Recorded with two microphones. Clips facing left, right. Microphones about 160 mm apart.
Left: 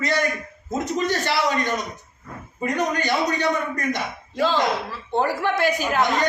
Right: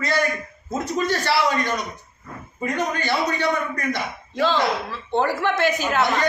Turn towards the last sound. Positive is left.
turn(degrees=15)  # may be behind; listen again after turning